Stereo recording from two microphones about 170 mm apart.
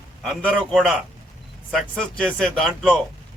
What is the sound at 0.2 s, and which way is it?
A man's voice, centre (ahead or behind).